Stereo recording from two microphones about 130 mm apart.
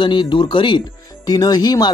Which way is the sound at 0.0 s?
40° left (ahead or behind).